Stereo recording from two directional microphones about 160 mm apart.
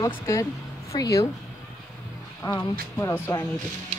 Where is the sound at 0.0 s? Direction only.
20° left (ahead or behind).